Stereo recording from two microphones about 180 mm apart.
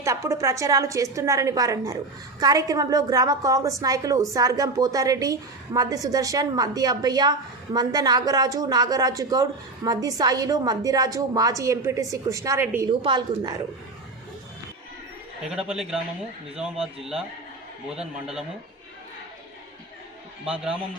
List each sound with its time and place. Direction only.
0.0 s a woman's voice: 15° right (ahead or behind)
15.4 s a man's voice: 5° right (ahead or behind)
17.8 s a man's voice: 5° right (ahead or behind)